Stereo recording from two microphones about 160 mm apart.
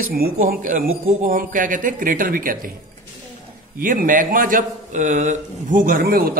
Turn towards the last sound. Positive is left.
turn(degrees=-75)  # may be behind; listen again after turning